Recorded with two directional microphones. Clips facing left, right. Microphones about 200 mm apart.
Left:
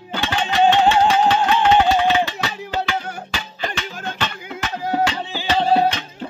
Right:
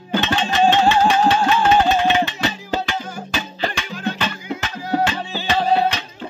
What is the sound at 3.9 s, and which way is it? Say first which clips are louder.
Music: right 5 dB; 45° left (ahead or behind).